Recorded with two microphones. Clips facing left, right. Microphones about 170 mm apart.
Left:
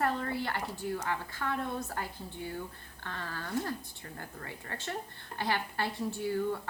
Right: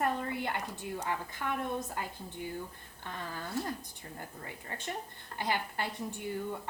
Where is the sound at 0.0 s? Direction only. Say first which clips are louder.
Left 1 dB; 15° right (ahead or behind).